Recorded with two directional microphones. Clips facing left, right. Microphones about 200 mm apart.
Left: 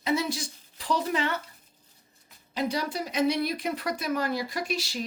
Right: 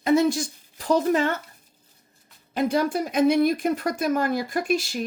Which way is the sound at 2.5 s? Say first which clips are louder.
Right 7 dB; 50° right (ahead or behind).